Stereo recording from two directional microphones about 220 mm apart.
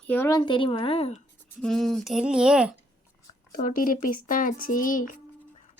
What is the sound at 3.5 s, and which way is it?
Speech, 40° left (ahead or behind).